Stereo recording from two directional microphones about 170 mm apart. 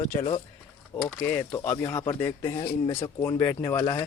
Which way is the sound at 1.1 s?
10° left (ahead or behind).